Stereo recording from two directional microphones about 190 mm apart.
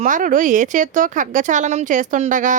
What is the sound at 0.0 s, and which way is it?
A woman's voice, 45° right (ahead or behind).